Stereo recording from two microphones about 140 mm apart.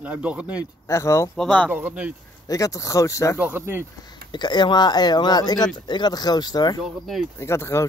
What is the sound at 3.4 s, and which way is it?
Speech, 15° right (ahead or behind).